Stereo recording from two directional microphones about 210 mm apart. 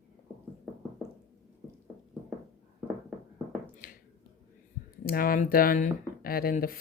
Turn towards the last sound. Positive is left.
turn(degrees=45)  # may be behind; listen again after turning